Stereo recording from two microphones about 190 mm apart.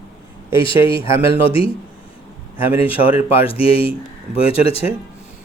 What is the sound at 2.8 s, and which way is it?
Speech, 30° left (ahead or behind).